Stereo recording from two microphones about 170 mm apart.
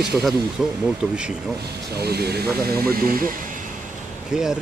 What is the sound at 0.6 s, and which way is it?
Speech, 5° right (ahead or behind).